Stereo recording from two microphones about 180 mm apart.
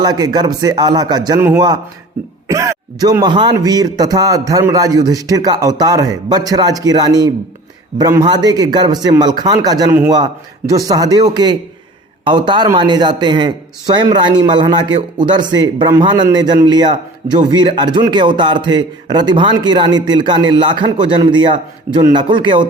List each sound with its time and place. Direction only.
0.0 s a man's voice: 25° right (ahead or behind)